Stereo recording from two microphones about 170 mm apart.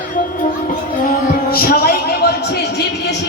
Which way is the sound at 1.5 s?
60° left (ahead or behind).